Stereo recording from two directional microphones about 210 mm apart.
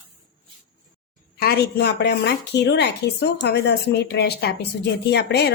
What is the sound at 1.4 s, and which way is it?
A woman's voice, 50° left (ahead or behind).